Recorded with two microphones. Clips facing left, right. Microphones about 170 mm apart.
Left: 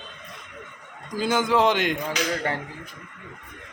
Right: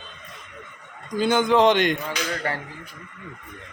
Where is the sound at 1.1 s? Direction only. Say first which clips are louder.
Right 3 dB; centre (ahead or behind).